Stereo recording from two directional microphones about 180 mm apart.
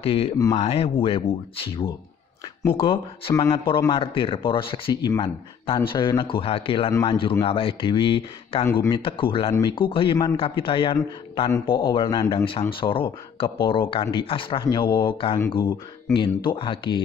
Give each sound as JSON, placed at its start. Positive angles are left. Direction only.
{"t": 0.0, "sound": "speech", "side_deg": 30}